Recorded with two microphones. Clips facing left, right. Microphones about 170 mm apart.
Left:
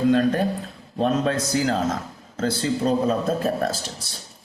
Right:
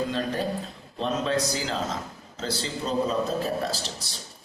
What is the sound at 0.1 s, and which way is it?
A man's voice, 55° left (ahead or behind).